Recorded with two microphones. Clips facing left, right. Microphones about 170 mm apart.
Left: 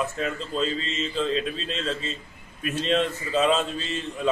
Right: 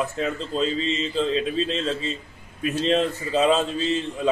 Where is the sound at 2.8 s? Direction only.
35° right (ahead or behind).